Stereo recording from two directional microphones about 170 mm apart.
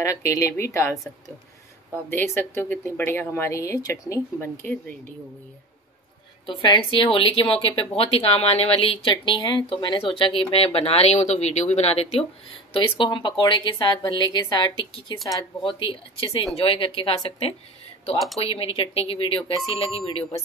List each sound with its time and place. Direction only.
0.0 s speech: 20° left (ahead or behind)
2.0 s speech: 15° left (ahead or behind)
6.4 s a woman's voice: 30° left (ahead or behind)